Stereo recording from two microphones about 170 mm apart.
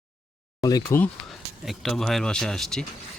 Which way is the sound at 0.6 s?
20° left (ahead or behind).